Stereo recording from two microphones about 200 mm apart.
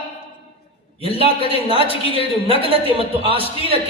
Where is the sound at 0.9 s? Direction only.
30° left (ahead or behind).